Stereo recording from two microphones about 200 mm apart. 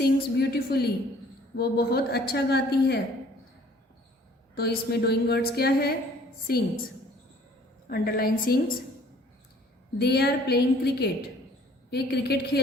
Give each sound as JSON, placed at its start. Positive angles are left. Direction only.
{"t": 0.0, "sound": "a woman's voice", "side_deg": 50}
{"t": 4.5, "sound": "a woman's voice", "side_deg": 55}
{"t": 7.9, "sound": "a woman's voice", "side_deg": 50}
{"t": 10.0, "sound": "a woman's voice", "side_deg": 55}